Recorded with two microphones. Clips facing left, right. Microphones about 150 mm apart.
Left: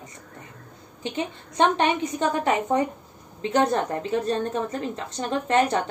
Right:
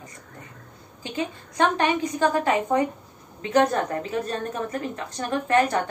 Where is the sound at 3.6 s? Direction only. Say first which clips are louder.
Right 1 dB; 30° left (ahead or behind).